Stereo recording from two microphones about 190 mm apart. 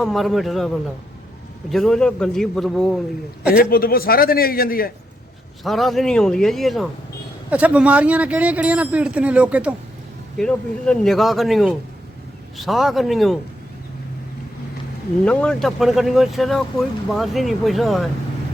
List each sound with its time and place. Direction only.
0.0 s speech: centre (ahead or behind)
1.7 s speech: centre (ahead or behind)
3.5 s a man's voice: 50° left (ahead or behind)
5.6 s speech: centre (ahead or behind)
10.3 s speech: 5° left (ahead or behind)
15.2 s speech: 5° left (ahead or behind)